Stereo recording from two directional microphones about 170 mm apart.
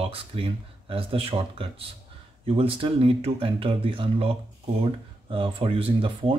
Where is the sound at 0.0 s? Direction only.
35° right (ahead or behind).